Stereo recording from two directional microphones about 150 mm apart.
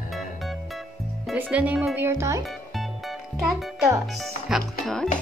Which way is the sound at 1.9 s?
15° right (ahead or behind).